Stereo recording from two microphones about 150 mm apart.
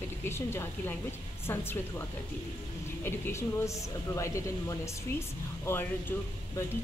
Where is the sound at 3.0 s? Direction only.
15° left (ahead or behind).